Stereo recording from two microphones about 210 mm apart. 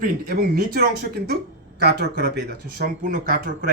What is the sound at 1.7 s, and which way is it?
Speech, 55° right (ahead or behind).